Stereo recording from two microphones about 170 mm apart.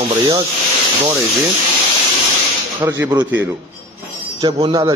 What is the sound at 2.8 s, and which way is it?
Speech, 20° right (ahead or behind).